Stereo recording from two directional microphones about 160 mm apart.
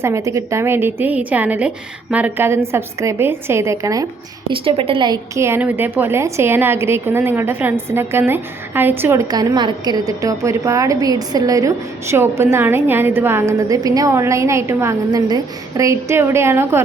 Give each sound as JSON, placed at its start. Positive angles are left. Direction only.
{"t": 0.0, "sound": "a woman's voice", "side_deg": -20}
{"t": 4.4, "sound": "a woman's voice", "side_deg": -35}